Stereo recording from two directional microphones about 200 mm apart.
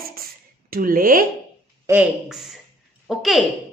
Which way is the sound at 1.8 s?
10° right (ahead or behind).